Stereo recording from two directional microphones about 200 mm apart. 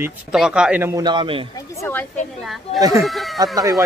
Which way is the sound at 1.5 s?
15° left (ahead or behind).